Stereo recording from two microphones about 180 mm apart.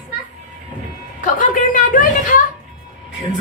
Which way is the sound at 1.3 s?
45° left (ahead or behind).